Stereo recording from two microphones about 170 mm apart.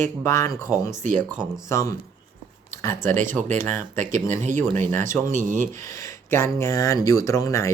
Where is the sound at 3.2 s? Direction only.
45° right (ahead or behind).